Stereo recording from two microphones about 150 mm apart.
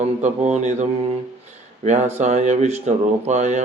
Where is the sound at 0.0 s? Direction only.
50° right (ahead or behind).